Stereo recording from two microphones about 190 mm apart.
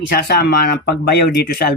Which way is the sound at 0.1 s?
55° left (ahead or behind).